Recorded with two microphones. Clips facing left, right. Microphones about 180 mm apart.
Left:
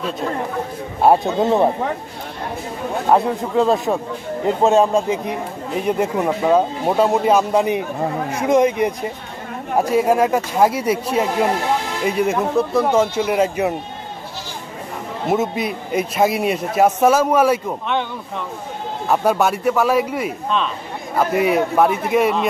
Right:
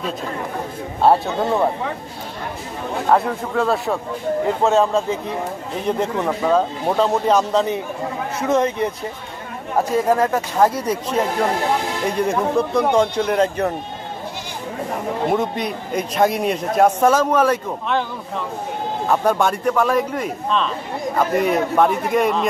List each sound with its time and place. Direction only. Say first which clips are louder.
1.0 s speech: left 2 dB; 20° left (ahead or behind)
3.1 s a man's voice: left 2 dB; 15° left (ahead or behind)
15.3 s a man's voice: left 1 dB; 5° left (ahead or behind)
19.0 s a man's voice: left 1 dB; 5° left (ahead or behind)